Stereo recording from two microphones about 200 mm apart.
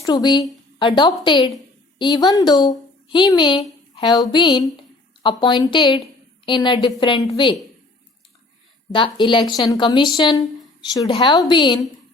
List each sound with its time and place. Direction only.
0.0 s a woman's voice: 20° left (ahead or behind)
8.9 s a woman's voice: 25° left (ahead or behind)